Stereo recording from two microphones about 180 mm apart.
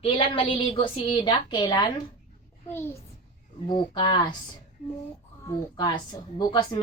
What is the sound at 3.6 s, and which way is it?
Speech, 25° left (ahead or behind).